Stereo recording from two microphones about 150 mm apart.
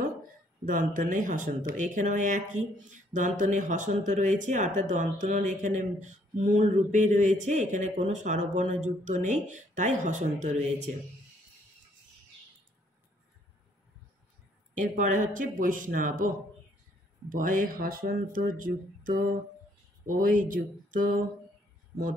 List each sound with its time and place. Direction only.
0.7 s speech: 65° right (ahead or behind)
14.8 s speech: 60° right (ahead or behind)